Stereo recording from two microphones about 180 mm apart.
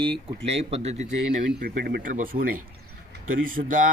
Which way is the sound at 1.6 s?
60° right (ahead or behind).